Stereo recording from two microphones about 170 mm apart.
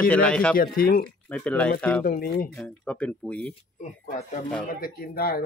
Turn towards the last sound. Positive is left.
turn(degrees=60)  # may be behind; listen again after turning